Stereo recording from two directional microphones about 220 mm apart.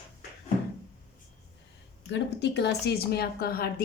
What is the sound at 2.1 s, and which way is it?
Speech, 50° left (ahead or behind).